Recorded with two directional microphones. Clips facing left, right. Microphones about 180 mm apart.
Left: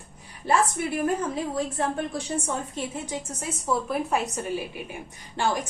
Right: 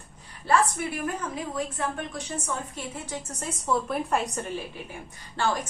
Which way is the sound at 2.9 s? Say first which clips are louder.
Left 3 dB; 15° left (ahead or behind).